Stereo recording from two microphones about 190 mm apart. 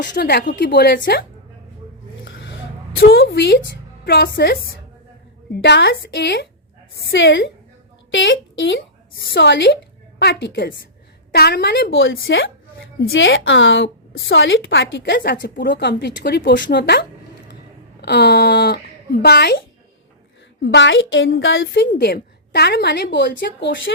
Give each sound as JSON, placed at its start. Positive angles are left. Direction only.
{"t": 0.0, "sound": "a woman's voice", "side_deg": 60}
{"t": 2.2, "sound": "a sound", "side_deg": 70}
{"t": 3.1, "sound": "a woman's voice", "side_deg": 65}
{"t": 5.6, "sound": "a woman's voice", "side_deg": 65}
{"t": 18.0, "sound": "a woman's voice", "side_deg": 60}
{"t": 20.6, "sound": "a woman's voice", "side_deg": 70}
{"t": 21.8, "sound": "a woman's voice", "side_deg": 55}